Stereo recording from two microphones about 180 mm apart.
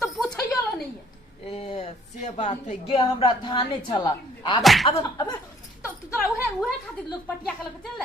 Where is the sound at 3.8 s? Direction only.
25° left (ahead or behind).